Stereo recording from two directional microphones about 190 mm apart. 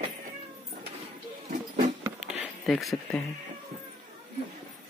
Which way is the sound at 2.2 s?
Centre (ahead or behind).